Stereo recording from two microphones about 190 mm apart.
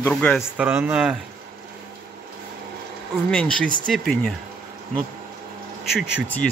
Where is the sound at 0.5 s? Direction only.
10° right (ahead or behind).